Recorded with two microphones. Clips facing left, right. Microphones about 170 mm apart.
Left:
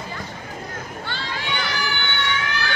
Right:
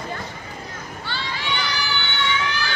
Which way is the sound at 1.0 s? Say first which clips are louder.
Right 2 dB; 50° left (ahead or behind).